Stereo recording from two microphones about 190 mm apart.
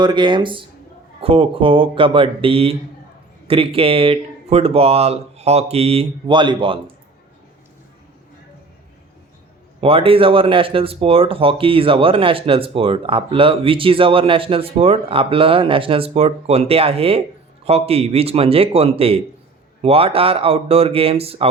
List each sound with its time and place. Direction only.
0.0 s speech: 25° right (ahead or behind)
9.8 s speech: 30° right (ahead or behind)